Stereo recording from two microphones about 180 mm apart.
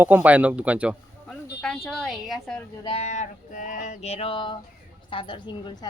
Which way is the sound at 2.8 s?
35° left (ahead or behind).